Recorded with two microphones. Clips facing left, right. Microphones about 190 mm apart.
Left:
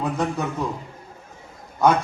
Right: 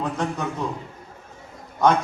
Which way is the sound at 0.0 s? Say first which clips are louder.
Left 2 dB; 10° left (ahead or behind).